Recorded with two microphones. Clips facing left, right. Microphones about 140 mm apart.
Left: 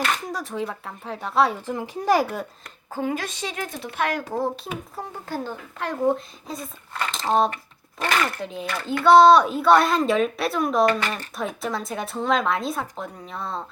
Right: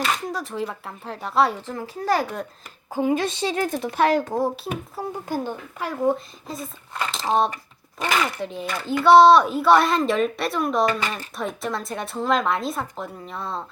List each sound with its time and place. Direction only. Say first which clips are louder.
0.0 s speech: right 1 dB; centre (ahead or behind)
1.6 s speech: left 2 dB; 15° left (ahead or behind)
2.9 s a woman's voice: right 5 dB; 20° right (ahead or behind)
4.3 s speech: right 2 dB; 10° right (ahead or behind)